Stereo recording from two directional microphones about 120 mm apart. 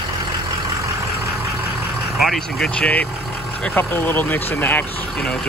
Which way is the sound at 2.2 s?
5° left (ahead or behind).